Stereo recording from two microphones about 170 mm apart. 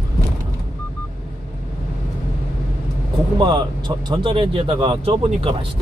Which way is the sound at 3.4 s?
25° right (ahead or behind).